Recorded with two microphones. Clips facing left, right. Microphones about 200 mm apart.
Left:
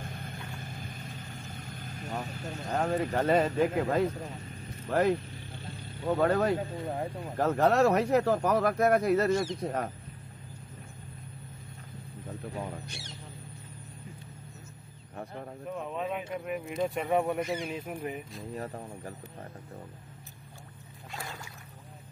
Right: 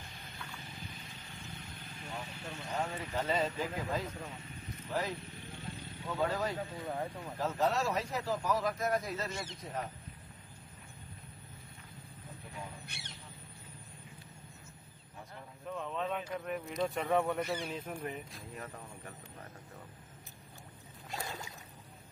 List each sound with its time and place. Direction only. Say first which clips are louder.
0.0 s vehicle: left 8 dB; 50° left (ahead or behind)
2.7 s speech: left 9 dB; 60° left (ahead or behind)
6.9 s speech: left 4 dB; 25° left (ahead or behind)
7.3 s speech: left 8 dB; 60° left (ahead or behind)
12.8 s a sound: left 6 dB; 60° right (ahead or behind)
15.7 s speech: left 2 dB; 10° left (ahead or behind)
18.5 s speech: left 10 dB; 35° left (ahead or behind)